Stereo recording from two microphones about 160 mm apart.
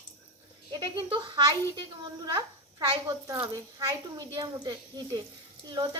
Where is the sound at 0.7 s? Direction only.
25° right (ahead or behind).